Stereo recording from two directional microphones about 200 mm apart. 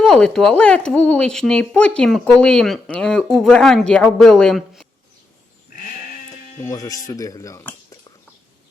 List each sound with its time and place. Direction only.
0.0 s speech: centre (ahead or behind)
6.6 s speech: 15° left (ahead or behind)